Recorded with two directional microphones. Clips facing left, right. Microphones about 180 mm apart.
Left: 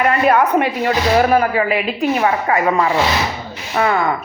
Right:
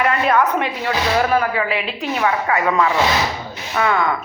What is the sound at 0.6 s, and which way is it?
A woman's voice, 45° left (ahead or behind).